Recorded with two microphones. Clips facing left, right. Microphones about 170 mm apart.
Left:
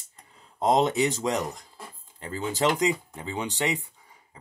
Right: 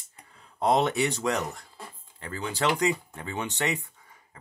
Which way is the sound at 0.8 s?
15° left (ahead or behind).